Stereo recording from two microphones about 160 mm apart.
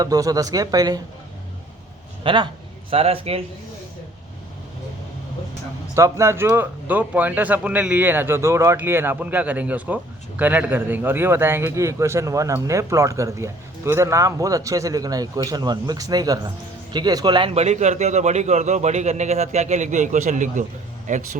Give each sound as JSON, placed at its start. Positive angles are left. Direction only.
{"t": 0.0, "sound": "speech", "side_deg": -20}
{"t": 2.2, "sound": "a man's voice", "side_deg": -30}
{"t": 5.9, "sound": "speech", "side_deg": -20}